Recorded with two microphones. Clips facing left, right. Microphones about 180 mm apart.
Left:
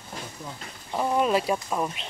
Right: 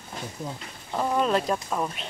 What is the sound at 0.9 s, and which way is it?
Speech, 10° left (ahead or behind).